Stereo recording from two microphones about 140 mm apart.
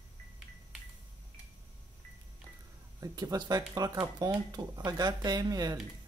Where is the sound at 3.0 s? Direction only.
25° right (ahead or behind).